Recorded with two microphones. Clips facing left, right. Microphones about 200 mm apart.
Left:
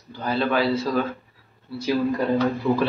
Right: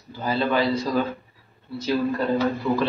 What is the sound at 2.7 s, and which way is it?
Speech, 15° left (ahead or behind).